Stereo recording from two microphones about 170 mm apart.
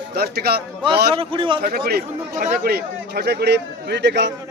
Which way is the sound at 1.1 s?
30° right (ahead or behind).